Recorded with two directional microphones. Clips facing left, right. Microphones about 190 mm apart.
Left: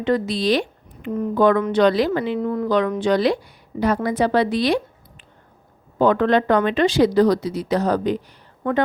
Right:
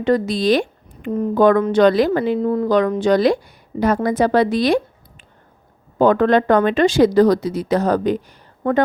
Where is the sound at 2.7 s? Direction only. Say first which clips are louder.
Right 3 dB; 45° right (ahead or behind).